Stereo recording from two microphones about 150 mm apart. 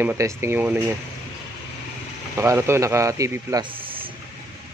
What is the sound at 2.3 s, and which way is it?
A man's voice, 20° right (ahead or behind).